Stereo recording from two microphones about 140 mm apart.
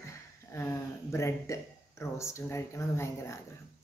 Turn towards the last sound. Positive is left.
turn(degrees=20)  # may be behind; listen again after turning